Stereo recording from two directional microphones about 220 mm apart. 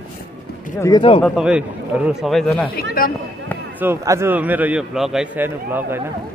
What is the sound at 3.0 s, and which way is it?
Speech, 40° left (ahead or behind).